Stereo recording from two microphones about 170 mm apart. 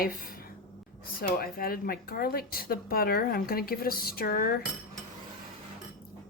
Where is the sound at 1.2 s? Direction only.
60° left (ahead or behind).